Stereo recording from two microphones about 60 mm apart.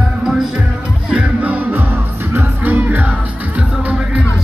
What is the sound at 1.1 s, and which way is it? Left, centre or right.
Music, right.